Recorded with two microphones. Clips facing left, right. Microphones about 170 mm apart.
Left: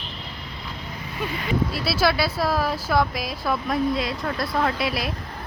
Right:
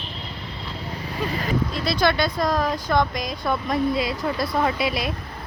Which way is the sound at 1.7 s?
5° left (ahead or behind).